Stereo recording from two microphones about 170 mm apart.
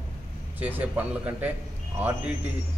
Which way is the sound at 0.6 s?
10° right (ahead or behind).